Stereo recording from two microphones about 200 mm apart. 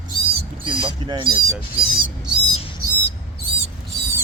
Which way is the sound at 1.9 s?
25° right (ahead or behind).